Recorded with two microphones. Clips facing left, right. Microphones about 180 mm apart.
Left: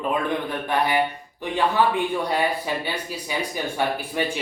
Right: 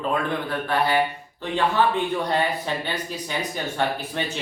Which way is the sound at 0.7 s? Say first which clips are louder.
Even; 15° left (ahead or behind).